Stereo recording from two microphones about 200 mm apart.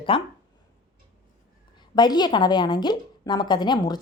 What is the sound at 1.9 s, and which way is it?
A woman's voice, 20° left (ahead or behind).